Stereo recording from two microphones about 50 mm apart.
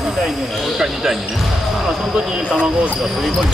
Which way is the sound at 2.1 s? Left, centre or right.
Centre.